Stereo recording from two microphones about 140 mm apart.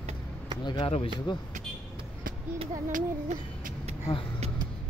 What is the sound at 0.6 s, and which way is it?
Speech, 35° left (ahead or behind).